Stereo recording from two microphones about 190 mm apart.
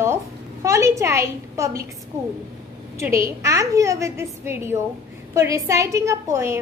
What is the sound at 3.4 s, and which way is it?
A woman's voice, 15° right (ahead or behind).